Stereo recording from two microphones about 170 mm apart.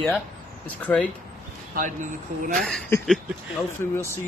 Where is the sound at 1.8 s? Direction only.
50° right (ahead or behind).